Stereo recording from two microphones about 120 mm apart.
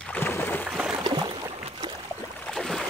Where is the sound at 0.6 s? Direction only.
5° right (ahead or behind).